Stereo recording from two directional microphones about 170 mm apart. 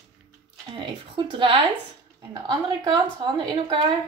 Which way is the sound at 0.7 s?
30° right (ahead or behind).